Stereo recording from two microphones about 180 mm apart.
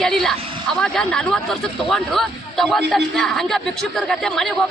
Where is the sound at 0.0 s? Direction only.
Centre (ahead or behind).